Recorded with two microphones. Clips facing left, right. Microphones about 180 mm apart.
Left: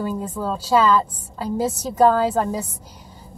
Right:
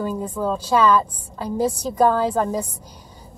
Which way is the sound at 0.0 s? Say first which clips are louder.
Right 1 dB; 5° left (ahead or behind).